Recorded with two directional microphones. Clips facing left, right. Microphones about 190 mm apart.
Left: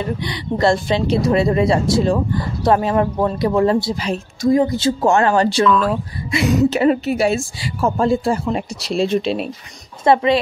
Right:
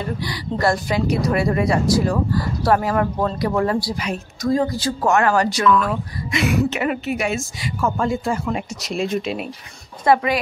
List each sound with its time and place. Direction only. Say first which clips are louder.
0.0 s speech: left 3 dB; 20° left (ahead or behind)
6.7 s speech: left 7 dB; 35° left (ahead or behind)